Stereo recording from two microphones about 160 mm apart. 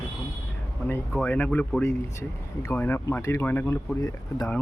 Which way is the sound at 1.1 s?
10° left (ahead or behind).